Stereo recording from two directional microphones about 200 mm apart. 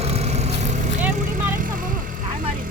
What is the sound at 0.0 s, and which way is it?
Vehicle, 30° right (ahead or behind).